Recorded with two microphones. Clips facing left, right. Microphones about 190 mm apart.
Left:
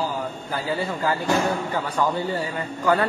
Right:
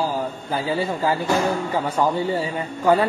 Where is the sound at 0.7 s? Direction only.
25° right (ahead or behind).